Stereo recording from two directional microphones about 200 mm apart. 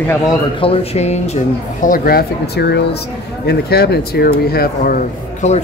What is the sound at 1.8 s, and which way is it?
Speech, 45° left (ahead or behind).